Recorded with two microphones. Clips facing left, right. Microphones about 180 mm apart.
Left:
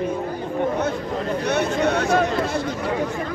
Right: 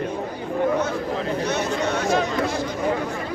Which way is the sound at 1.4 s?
60° left (ahead or behind).